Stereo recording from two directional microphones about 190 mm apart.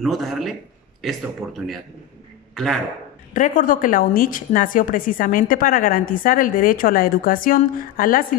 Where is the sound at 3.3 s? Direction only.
45° left (ahead or behind).